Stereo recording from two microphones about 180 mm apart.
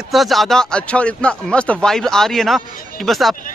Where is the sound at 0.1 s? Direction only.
Centre (ahead or behind).